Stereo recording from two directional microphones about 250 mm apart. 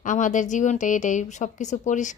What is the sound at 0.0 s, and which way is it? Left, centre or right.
Speech, left.